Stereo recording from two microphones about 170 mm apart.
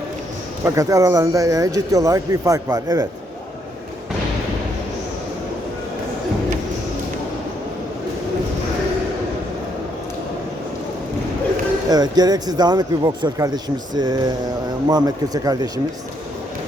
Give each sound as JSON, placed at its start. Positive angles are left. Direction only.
{"t": 0.6, "sound": "speech", "side_deg": -20}
{"t": 11.9, "sound": "speech", "side_deg": -25}